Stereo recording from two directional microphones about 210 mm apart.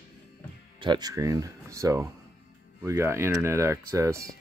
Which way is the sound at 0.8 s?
20° right (ahead or behind).